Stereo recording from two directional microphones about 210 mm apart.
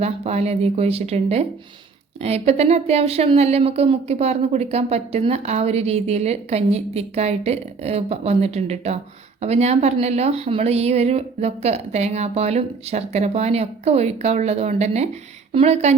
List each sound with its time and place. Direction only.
0.0 s a woman's voice: 30° right (ahead or behind)